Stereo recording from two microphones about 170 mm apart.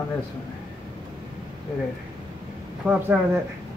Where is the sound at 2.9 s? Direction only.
10° right (ahead or behind).